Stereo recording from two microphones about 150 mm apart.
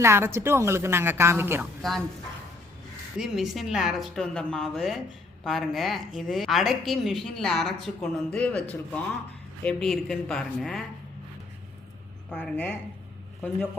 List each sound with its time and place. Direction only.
0.0 s a woman's voice: 15° right (ahead or behind)
1.8 s a woman's voice: centre (ahead or behind)
3.2 s a woman's voice: centre (ahead or behind)
9.6 s a woman's voice: 5° left (ahead or behind)
12.3 s speech: 5° left (ahead or behind)